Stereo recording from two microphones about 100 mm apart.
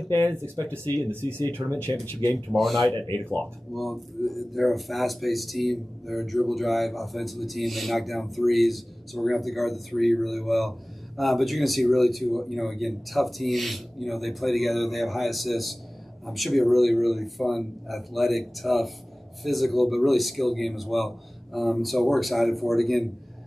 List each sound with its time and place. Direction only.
0.6 s speech: 20° left (ahead or behind)
2.3 s speech: centre (ahead or behind)